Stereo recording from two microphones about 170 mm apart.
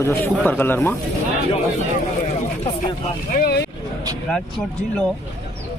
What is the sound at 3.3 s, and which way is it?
Speech, 60° left (ahead or behind).